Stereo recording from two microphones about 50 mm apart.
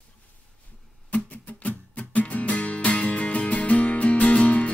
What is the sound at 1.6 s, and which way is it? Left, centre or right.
Music, left.